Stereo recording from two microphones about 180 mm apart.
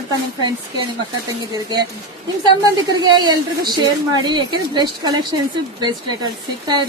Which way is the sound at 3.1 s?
25° right (ahead or behind).